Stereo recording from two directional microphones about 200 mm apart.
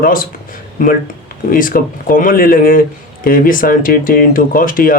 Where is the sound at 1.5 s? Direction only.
45° left (ahead or behind).